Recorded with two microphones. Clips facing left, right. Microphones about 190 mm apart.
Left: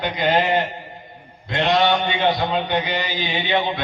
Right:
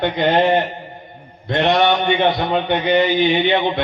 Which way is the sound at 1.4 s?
60° right (ahead or behind).